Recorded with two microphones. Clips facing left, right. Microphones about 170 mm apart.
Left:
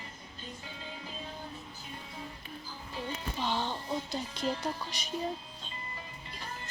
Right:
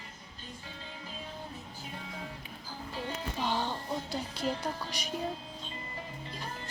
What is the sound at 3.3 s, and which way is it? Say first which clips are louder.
Music: right 1 dB; 10° right (ahead or behind).